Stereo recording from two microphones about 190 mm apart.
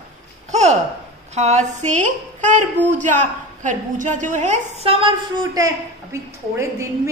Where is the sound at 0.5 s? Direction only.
35° right (ahead or behind).